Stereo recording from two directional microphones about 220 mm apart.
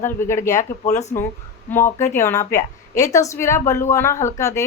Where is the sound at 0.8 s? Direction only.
30° left (ahead or behind).